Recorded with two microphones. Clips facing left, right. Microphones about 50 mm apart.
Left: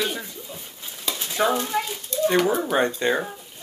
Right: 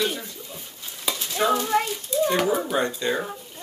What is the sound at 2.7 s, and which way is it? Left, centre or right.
Speech, left.